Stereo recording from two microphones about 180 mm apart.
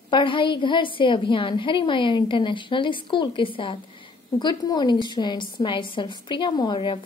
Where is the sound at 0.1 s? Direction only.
30° left (ahead or behind).